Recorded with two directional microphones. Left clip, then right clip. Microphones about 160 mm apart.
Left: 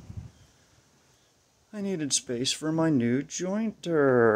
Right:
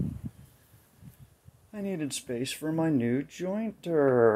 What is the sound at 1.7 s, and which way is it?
Speech, 25° left (ahead or behind).